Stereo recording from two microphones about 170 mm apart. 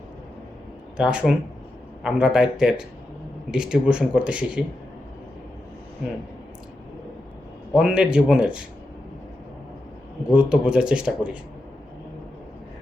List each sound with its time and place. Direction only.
0.9 s a man's voice: 5° right (ahead or behind)
7.7 s a man's voice: 5° right (ahead or behind)
10.3 s a man's voice: 5° right (ahead or behind)